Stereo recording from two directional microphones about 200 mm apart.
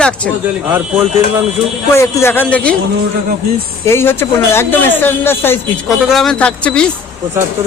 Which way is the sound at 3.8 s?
10° left (ahead or behind).